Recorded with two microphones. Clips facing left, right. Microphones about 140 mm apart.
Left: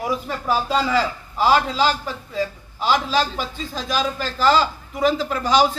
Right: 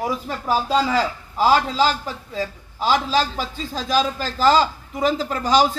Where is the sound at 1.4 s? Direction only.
40° right (ahead or behind).